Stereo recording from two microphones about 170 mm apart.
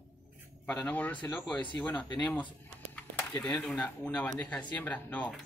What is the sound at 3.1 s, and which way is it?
Speech, 5° left (ahead or behind).